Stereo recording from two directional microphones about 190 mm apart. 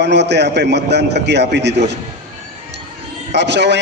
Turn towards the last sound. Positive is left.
turn(degrees=-65)  # may be behind; listen again after turning